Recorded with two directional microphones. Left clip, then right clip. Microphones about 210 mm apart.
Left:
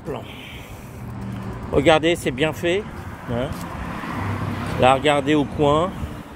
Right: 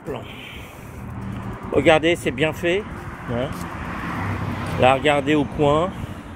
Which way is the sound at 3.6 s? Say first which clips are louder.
Right 1 dB; 60° left (ahead or behind).